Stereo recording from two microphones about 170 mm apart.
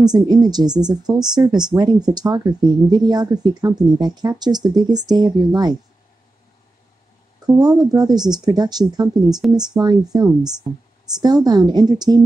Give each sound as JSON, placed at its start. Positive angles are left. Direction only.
{"t": 0.0, "sound": "speech", "side_deg": -25}
{"t": 7.4, "sound": "speech", "side_deg": -20}